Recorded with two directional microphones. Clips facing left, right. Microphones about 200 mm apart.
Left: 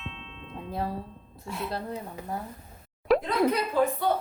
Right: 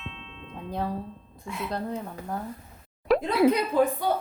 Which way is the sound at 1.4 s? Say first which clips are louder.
Even; 40° left (ahead or behind).